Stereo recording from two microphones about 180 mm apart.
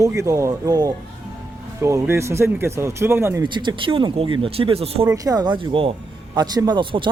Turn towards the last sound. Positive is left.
turn(degrees=-25)  # may be behind; listen again after turning